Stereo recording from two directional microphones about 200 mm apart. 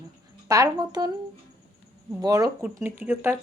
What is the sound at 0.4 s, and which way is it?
Speech, 15° right (ahead or behind).